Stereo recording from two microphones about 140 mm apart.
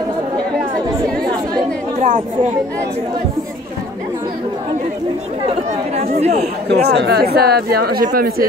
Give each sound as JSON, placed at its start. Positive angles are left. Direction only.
{"t": 2.0, "sound": "chatter", "side_deg": -70}
{"t": 5.5, "sound": "speech", "side_deg": -50}
{"t": 7.2, "sound": "speech", "side_deg": -90}